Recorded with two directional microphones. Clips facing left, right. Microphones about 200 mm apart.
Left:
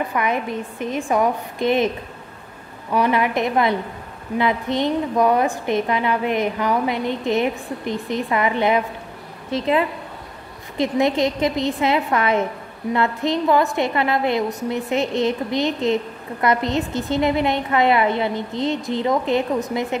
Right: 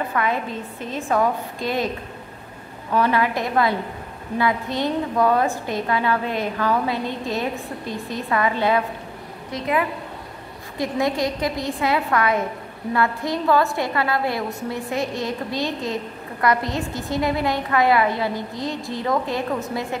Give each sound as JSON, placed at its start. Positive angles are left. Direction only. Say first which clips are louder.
{"t": 0.1, "sound": "a woman's voice", "louder": "left 1 dB", "side_deg": 15}
{"t": 2.9, "sound": "a woman's voice", "louder": "left 1 dB", "side_deg": 15}